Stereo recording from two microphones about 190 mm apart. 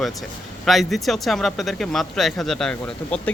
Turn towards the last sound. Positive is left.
turn(degrees=5)  # may be behind; listen again after turning